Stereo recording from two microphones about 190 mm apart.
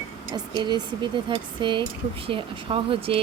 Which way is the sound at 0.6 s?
25° right (ahead or behind).